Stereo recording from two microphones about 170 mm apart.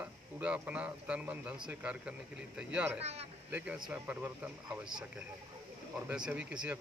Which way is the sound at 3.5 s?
5° right (ahead or behind).